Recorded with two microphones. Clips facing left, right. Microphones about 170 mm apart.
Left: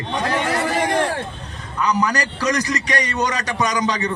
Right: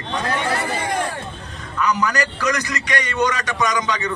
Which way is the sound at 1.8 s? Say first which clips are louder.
Even; 35° left (ahead or behind).